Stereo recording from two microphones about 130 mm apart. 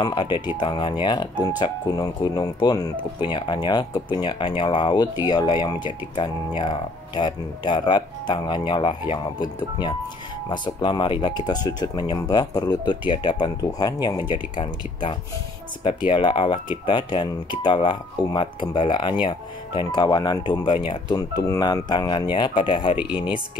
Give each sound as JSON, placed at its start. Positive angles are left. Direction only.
{"t": 0.0, "sound": "speech", "side_deg": 35}
{"t": 22.9, "sound": "speech", "side_deg": -10}